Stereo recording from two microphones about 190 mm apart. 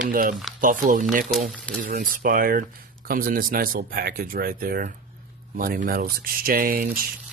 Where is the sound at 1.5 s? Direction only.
5° left (ahead or behind).